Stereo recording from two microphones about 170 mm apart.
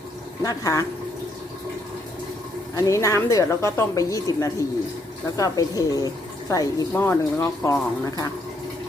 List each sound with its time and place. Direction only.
0.4 s a woman's voice: 20° left (ahead or behind)
2.7 s a woman's voice: 20° left (ahead or behind)